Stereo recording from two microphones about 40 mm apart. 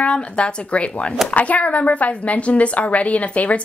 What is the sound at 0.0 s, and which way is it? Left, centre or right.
A woman's voice, left.